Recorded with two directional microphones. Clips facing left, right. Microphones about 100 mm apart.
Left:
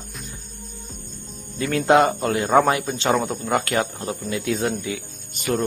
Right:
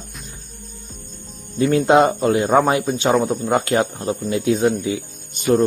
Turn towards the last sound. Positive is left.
turn(degrees=-25)  # may be behind; listen again after turning